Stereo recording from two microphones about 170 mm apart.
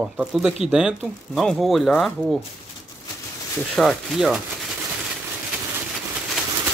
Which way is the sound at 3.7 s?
Centre (ahead or behind).